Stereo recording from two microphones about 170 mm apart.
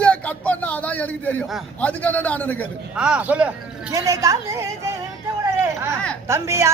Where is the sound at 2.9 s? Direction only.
5° right (ahead or behind).